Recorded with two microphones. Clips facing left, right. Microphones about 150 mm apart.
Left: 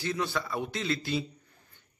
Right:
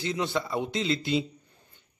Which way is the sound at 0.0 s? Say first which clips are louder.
Right 2 dB; 20° right (ahead or behind).